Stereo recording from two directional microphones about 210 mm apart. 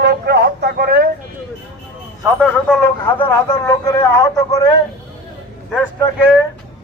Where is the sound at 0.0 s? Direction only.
50° right (ahead or behind).